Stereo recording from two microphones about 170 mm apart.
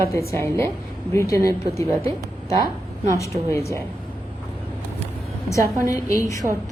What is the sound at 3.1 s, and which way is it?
Speech, 15° left (ahead or behind).